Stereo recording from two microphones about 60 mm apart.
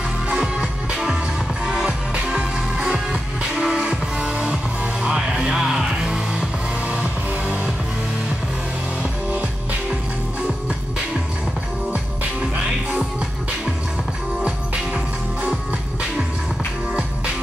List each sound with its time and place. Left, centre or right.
0.3 s music: centre
6.9 s music: centre